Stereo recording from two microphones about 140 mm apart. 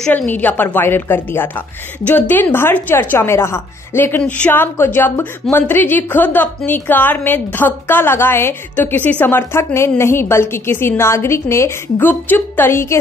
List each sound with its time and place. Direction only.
0.0 s a woman's voice: 10° left (ahead or behind)